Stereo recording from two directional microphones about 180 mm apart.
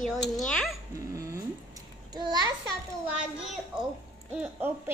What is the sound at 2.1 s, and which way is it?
Speech, 25° right (ahead or behind).